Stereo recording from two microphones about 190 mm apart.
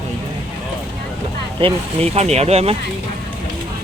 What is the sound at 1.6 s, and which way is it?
Speech, 30° right (ahead or behind).